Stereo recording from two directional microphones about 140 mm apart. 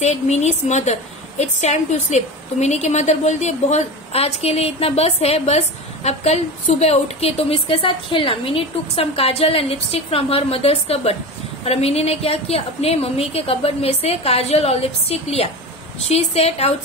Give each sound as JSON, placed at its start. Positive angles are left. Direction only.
{"t": 0.0, "sound": "a woman's voice", "side_deg": 50}